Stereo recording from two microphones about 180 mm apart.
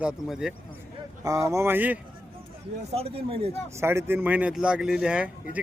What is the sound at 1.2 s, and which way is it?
Speech, 20° right (ahead or behind).